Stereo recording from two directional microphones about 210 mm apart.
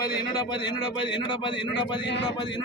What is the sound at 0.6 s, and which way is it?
A man's voice, 20° left (ahead or behind).